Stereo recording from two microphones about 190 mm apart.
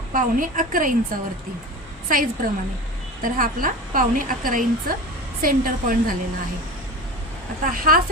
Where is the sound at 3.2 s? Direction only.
45° right (ahead or behind).